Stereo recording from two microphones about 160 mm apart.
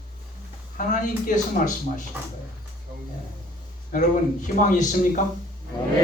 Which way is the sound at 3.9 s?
55° left (ahead or behind).